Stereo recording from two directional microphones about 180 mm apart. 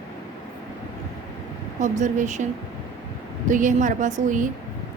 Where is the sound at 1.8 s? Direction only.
45° right (ahead or behind).